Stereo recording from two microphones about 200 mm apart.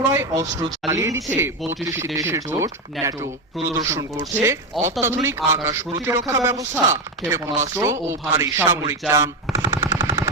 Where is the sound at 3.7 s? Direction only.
15° right (ahead or behind).